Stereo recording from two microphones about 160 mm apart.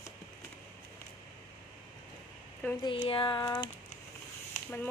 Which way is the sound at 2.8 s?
30° left (ahead or behind).